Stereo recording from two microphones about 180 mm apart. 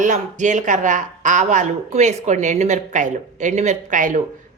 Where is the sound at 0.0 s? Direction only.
45° right (ahead or behind).